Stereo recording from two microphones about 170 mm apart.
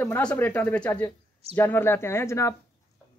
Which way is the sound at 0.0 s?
10° left (ahead or behind).